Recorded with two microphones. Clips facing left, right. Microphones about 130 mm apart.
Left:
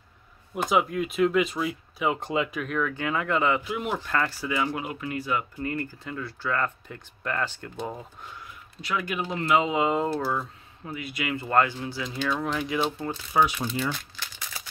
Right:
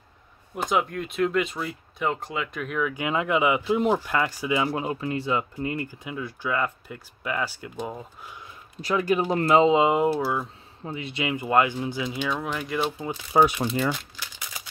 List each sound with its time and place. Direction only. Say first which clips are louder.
0.6 s speech: left 1 dB; centre (ahead or behind)
2.1 s speech: left 4 dB; 25° left (ahead or behind)
2.5 s speech: even; centre (ahead or behind)
3.6 s speech: right 7 dB; 30° right (ahead or behind)
4.0 s speech: right 2 dB; 15° right (ahead or behind)
4.6 s speech: right 4 dB; 30° right (ahead or behind); by 8.3 s 5° right (ahead or behind)
8.8 s speech: right 7 dB; 35° right (ahead or behind)
9.7 s speech: right 5 dB; 20° right (ahead or behind)
10.1 s speech: right 2 dB; 5° right (ahead or behind)
10.8 s speech: right 3 dB; 25° right (ahead or behind); by 12.9 s centre (ahead or behind)
13.3 s speech: right 4 dB; 35° right (ahead or behind)